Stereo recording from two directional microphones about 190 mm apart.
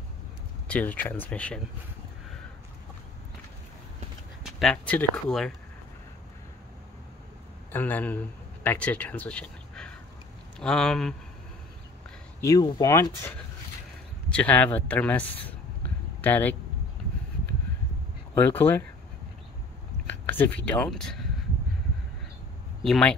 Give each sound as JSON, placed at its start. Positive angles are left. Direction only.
{"t": 0.7, "sound": "speech", "side_deg": 10}
{"t": 4.6, "sound": "speech", "side_deg": 5}
{"t": 7.7, "sound": "speech", "side_deg": 10}
{"t": 12.4, "sound": "speech", "side_deg": 20}
{"t": 14.3, "sound": "speech", "side_deg": 5}
{"t": 18.3, "sound": "speech", "side_deg": 10}
{"t": 20.2, "sound": "speech", "side_deg": 10}
{"t": 22.8, "sound": "speech", "side_deg": 5}